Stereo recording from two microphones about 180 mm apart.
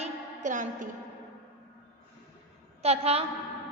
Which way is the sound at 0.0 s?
45° right (ahead or behind).